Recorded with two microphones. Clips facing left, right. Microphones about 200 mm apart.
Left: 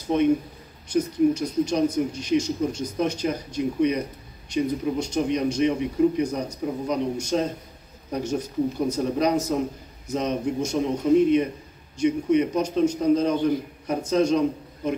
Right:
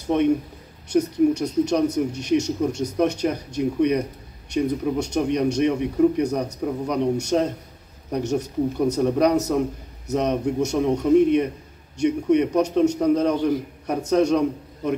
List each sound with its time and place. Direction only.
0.9 s a man's voice: 70° right (ahead or behind)